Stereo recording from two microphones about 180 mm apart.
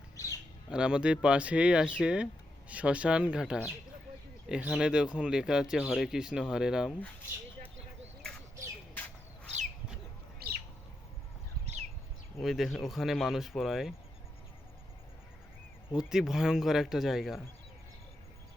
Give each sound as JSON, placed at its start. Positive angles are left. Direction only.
{"t": 0.7, "sound": "speech", "side_deg": -5}
{"t": 10.4, "sound": "bird", "side_deg": -60}
{"t": 11.6, "sound": "a sound", "side_deg": -40}
{"t": 12.4, "sound": "speech", "side_deg": 0}
{"t": 16.0, "sound": "speech", "side_deg": -5}